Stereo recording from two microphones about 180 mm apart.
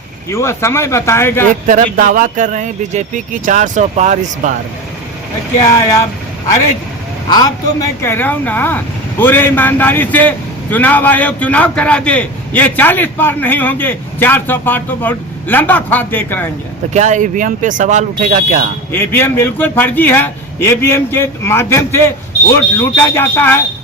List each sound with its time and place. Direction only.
0.3 s speech: 15° left (ahead or behind)
1.6 s speech: 45° right (ahead or behind)
7.3 s speech: 20° left (ahead or behind)
16.9 s speech: 40° right (ahead or behind)
18.9 s speech: 10° left (ahead or behind)